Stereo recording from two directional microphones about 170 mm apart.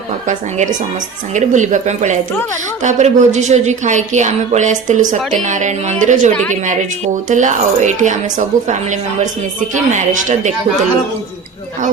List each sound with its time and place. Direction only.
0.3 s a woman's voice: 45° right (ahead or behind)